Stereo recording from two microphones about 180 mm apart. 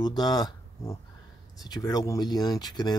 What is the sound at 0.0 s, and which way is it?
Speech, 25° left (ahead or behind).